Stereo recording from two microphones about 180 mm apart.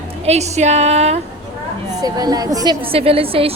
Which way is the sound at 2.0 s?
20° right (ahead or behind).